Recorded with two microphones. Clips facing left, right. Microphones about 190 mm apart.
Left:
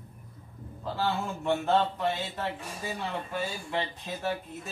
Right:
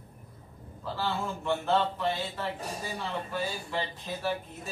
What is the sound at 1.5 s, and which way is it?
A child's voice, 15° left (ahead or behind).